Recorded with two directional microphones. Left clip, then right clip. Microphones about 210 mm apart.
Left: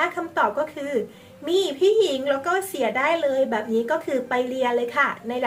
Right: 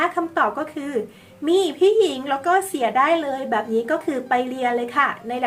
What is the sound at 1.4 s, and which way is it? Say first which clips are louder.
A woman's voice: right 3 dB; 20° right (ahead or behind).